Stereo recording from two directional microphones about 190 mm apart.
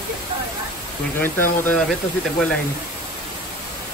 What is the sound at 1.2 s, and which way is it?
Speech, 10° left (ahead or behind).